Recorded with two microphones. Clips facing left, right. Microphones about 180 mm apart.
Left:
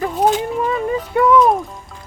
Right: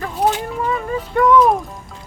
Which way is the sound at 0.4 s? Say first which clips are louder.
Left 3 dB; 20° left (ahead or behind).